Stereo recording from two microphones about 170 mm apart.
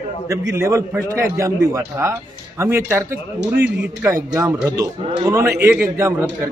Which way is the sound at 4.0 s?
15° right (ahead or behind).